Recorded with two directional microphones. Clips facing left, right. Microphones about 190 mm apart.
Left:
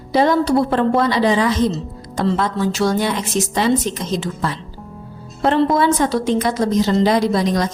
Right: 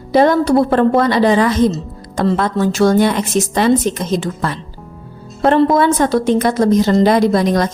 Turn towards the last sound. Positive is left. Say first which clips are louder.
# right 4 dB
turn(degrees=-55)  # may be behind; listen again after turning